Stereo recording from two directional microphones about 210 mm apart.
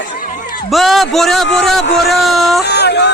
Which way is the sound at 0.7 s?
Centre (ahead or behind).